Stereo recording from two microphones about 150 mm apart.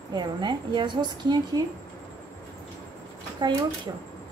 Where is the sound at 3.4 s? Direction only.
30° right (ahead or behind).